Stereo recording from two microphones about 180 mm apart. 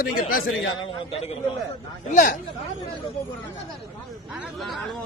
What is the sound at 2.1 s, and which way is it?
Speech, 50° left (ahead or behind).